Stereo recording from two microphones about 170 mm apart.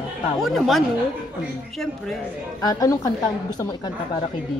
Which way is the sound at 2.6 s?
20° left (ahead or behind).